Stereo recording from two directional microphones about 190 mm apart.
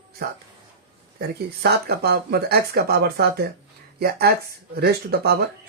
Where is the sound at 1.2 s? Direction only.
55° right (ahead or behind).